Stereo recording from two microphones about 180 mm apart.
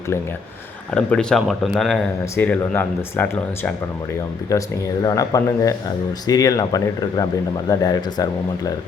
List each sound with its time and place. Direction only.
0.9 s speech: 5° left (ahead or behind); by 8.7 s 20° left (ahead or behind)